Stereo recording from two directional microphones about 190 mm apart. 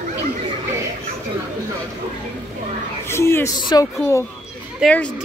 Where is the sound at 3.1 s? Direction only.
15° left (ahead or behind).